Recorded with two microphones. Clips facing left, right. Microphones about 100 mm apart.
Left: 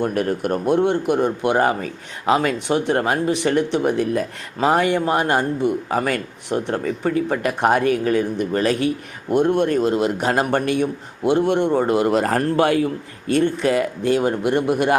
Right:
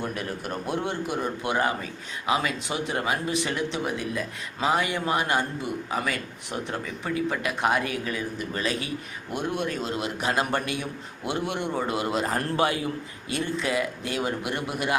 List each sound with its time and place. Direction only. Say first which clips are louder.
0.0 s a man's voice: left 11 dB; 55° left (ahead or behind)
10.2 s a man's voice: left 3 dB; 35° left (ahead or behind)
12.1 s a man's voice: left 8 dB; 65° left (ahead or behind)
14.0 s a man's voice: left 10 dB; 45° left (ahead or behind)